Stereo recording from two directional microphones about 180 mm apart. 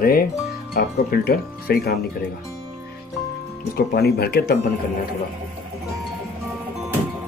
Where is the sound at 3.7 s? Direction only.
60° left (ahead or behind).